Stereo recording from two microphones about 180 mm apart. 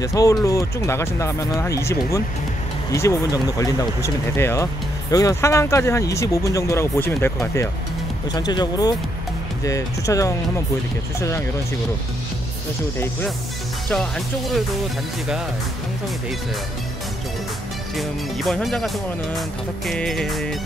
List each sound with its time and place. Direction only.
0.0 s speech: 20° left (ahead or behind)
13.8 s speech: centre (ahead or behind)
17.9 s speech: centre (ahead or behind)
19.9 s speech: 5° left (ahead or behind)